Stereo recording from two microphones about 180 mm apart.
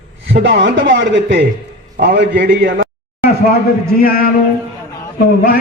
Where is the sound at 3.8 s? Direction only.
55° left (ahead or behind).